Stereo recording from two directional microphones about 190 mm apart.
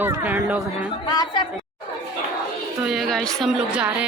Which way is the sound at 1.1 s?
20° left (ahead or behind).